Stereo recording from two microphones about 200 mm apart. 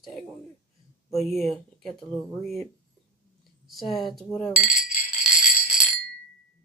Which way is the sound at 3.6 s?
Centre (ahead or behind).